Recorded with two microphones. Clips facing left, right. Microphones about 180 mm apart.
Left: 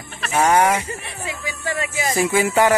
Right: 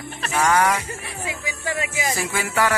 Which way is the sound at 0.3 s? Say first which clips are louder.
Left 3 dB; 25° left (ahead or behind).